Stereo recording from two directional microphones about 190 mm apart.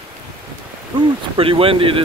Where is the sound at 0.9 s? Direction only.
25° right (ahead or behind).